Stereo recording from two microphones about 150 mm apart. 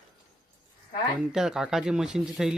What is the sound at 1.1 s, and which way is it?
Speech, 5° right (ahead or behind).